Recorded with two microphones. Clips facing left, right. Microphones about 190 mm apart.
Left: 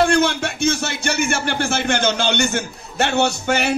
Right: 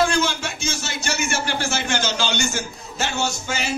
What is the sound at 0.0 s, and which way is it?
Speech, 60° left (ahead or behind).